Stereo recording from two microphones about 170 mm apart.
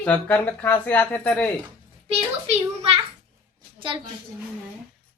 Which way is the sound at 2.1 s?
40° right (ahead or behind).